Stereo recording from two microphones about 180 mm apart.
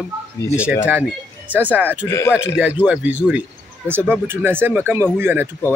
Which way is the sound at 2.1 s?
15° left (ahead or behind).